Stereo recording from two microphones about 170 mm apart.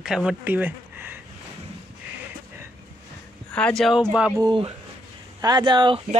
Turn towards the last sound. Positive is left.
turn(degrees=-30)  # may be behind; listen again after turning